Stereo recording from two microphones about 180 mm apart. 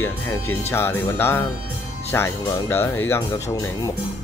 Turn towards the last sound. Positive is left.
turn(degrees=15)  # may be behind; listen again after turning